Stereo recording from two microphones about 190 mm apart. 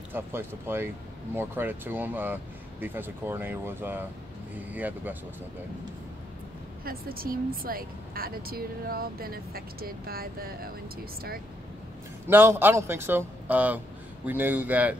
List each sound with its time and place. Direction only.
0.1 s a man's voice: 10° right (ahead or behind)
6.8 s speech: 50° right (ahead or behind)
12.3 s a man's voice: 10° right (ahead or behind)